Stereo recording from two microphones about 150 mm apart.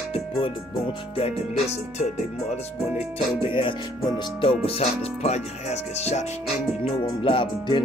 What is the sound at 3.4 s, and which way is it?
Music, 35° left (ahead or behind).